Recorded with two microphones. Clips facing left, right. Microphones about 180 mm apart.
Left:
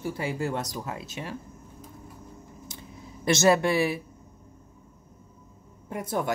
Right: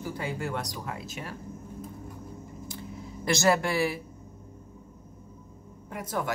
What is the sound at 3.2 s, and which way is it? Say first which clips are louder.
Speech: left 3 dB; 20° left (ahead or behind).